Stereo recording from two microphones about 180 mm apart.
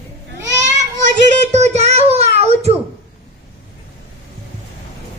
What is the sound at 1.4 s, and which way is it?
Child singing, 40° right (ahead or behind).